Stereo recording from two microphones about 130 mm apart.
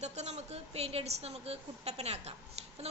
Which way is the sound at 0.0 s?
60° right (ahead or behind).